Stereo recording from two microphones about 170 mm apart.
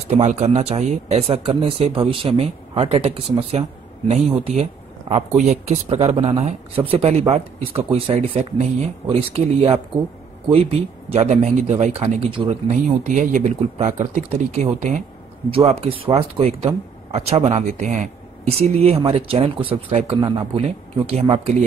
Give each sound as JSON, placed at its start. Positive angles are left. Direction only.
{"t": 0.1, "sound": "speech", "side_deg": -40}
{"t": 12.8, "sound": "speech", "side_deg": -50}
{"t": 20.2, "sound": "speech", "side_deg": -25}
{"t": 21.1, "sound": "speech", "side_deg": -35}